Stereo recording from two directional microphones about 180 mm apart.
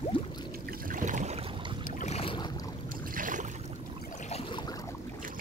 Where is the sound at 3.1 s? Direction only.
45° right (ahead or behind).